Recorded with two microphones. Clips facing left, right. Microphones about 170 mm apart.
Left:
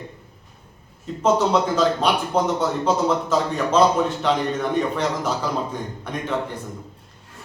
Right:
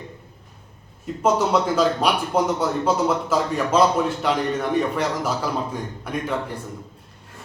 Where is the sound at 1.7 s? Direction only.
10° right (ahead or behind).